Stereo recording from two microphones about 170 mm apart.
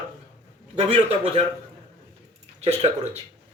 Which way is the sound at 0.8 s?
35° right (ahead or behind).